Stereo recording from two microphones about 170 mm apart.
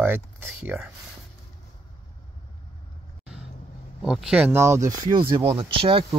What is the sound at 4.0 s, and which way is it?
Speech, 5° right (ahead or behind).